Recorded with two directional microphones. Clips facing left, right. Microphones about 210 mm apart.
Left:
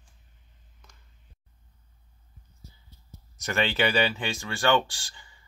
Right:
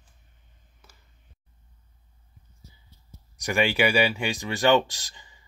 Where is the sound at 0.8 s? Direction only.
5° right (ahead or behind).